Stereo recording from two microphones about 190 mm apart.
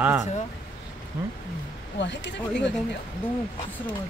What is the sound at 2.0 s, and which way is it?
Speech, 70° left (ahead or behind).